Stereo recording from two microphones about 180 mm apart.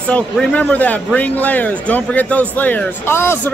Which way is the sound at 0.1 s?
5° left (ahead or behind).